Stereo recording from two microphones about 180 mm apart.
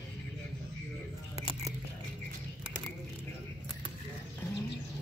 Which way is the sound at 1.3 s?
35° right (ahead or behind).